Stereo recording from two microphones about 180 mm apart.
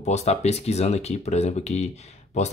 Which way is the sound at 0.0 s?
40° left (ahead or behind).